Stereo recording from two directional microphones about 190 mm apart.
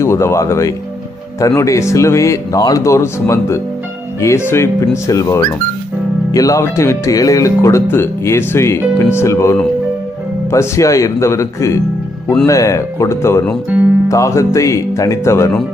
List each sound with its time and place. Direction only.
0.0 s speech: 15° left (ahead or behind)